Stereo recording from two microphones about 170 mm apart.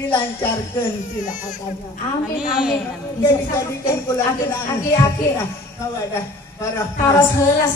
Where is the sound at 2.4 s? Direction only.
5° right (ahead or behind).